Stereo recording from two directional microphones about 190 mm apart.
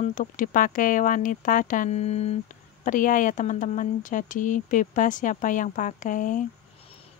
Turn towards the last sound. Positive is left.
turn(degrees=45)  # may be behind; listen again after turning